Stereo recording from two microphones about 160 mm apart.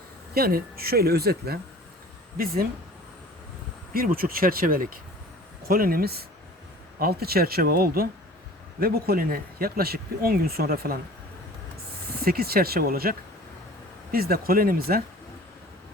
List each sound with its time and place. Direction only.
0.3 s speech: 70° right (ahead or behind)
3.9 s speech: 65° right (ahead or behind)
12.2 s speech: 70° right (ahead or behind)